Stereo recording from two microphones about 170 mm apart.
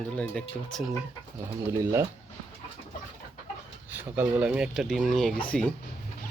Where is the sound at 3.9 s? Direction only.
10° right (ahead or behind); by 5.7 s 10° left (ahead or behind).